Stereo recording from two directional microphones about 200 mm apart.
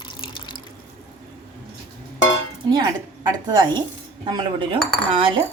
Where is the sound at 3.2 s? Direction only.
20° right (ahead or behind).